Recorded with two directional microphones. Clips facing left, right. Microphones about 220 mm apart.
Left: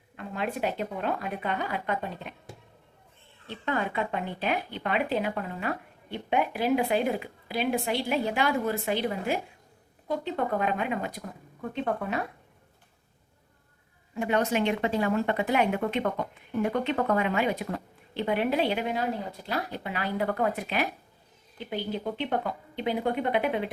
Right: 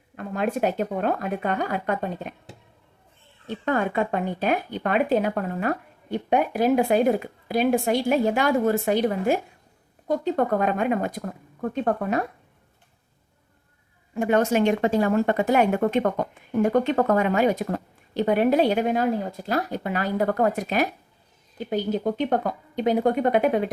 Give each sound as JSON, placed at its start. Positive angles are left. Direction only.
{"t": 0.2, "sound": "speech", "side_deg": -45}
{"t": 3.4, "sound": "speech", "side_deg": -45}
{"t": 14.2, "sound": "speech", "side_deg": -45}